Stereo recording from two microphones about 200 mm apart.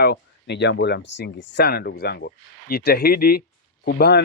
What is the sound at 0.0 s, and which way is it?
Speech, 55° left (ahead or behind).